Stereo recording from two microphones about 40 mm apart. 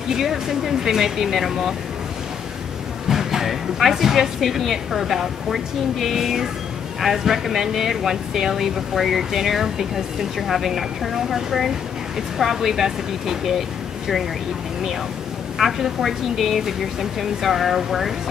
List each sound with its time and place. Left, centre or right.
0.1 s speech: centre
3.1 s a woman's voice: centre
15.5 s a woman's voice: centre